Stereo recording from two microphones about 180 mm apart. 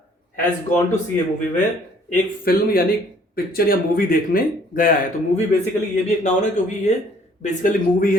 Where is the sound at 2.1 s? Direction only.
55° left (ahead or behind).